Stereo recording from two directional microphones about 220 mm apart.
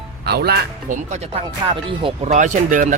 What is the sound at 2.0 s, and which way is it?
Speech, 30° right (ahead or behind).